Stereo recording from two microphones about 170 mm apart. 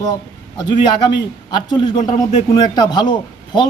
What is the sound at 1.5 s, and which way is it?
A man's voice, 25° left (ahead or behind).